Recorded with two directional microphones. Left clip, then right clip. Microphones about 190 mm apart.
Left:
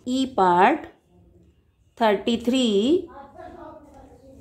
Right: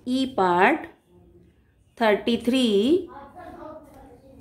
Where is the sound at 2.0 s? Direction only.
10° left (ahead or behind).